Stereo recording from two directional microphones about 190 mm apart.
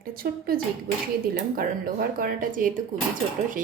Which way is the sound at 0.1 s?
50° right (ahead or behind).